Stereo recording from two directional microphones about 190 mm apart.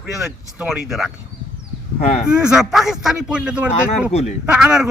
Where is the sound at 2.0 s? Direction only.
35° left (ahead or behind).